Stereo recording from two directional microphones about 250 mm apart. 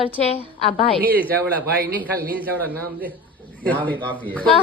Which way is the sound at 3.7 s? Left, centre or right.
Centre.